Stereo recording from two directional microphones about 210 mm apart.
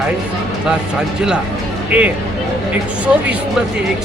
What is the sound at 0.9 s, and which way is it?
A man's voice, 5° right (ahead or behind).